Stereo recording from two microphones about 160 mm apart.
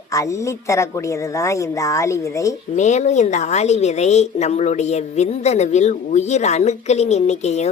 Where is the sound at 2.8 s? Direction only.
45° left (ahead or behind).